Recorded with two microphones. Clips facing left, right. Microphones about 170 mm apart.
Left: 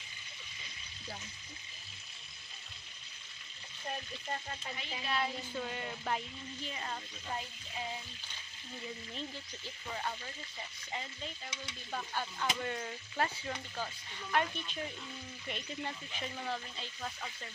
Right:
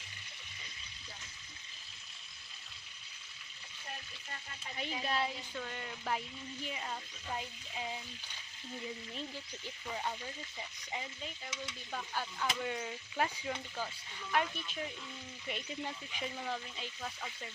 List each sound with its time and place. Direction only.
4.8 s a woman's voice: 40° right (ahead or behind)
5.5 s a sound: 5° left (ahead or behind)
6.6 s frying: 10° right (ahead or behind)
9.9 s frying: 10° right (ahead or behind)
11.9 s frying: centre (ahead or behind)
14.3 s a sound: centre (ahead or behind)
15.4 s frying: 5° right (ahead or behind)